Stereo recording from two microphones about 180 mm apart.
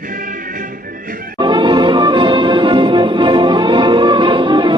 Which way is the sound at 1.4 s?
25° right (ahead or behind).